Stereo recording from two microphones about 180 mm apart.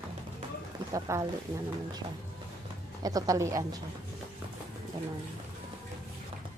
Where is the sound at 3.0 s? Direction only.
20° right (ahead or behind).